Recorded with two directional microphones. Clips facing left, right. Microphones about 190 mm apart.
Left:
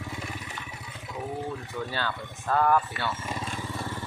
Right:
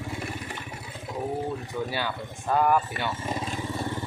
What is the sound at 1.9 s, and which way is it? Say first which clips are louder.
Speech: right 2 dB; 15° right (ahead or behind).